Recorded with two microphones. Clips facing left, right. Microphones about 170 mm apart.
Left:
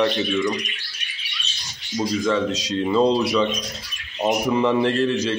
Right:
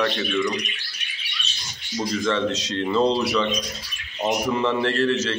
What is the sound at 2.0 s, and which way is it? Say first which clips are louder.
A man's voice: left 2 dB; 10° left (ahead or behind).